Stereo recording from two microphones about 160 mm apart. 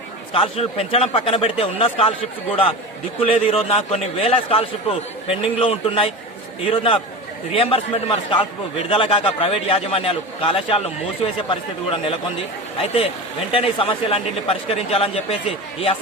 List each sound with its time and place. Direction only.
0.3 s a man's voice: 35° left (ahead or behind)